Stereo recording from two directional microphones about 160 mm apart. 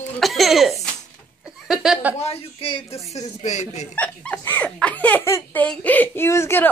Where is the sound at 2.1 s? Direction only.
40° left (ahead or behind).